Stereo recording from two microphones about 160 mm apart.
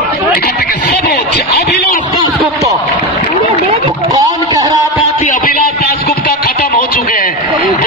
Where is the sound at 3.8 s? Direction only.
25° right (ahead or behind).